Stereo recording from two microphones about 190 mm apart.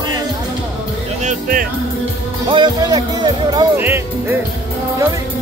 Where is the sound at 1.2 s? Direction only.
45° right (ahead or behind).